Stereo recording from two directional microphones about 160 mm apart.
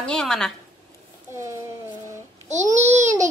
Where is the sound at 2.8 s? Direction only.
45° right (ahead or behind).